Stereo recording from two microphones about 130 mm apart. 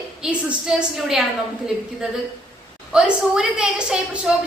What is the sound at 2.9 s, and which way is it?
A woman's voice, 5° right (ahead or behind).